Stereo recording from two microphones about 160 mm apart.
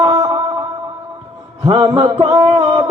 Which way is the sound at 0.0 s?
25° right (ahead or behind).